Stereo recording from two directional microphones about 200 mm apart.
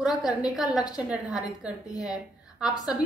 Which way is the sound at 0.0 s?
5° right (ahead or behind).